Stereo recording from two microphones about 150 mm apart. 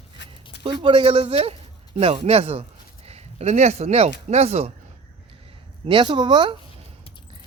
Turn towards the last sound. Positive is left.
turn(degrees=-30)  # may be behind; listen again after turning